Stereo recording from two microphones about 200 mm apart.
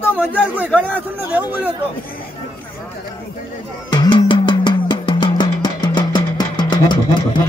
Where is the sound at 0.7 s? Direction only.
10° right (ahead or behind).